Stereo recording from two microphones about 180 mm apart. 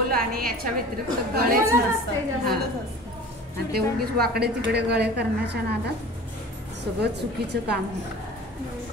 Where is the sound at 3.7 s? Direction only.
60° right (ahead or behind).